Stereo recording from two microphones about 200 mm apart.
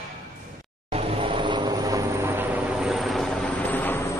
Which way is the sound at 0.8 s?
30° right (ahead or behind).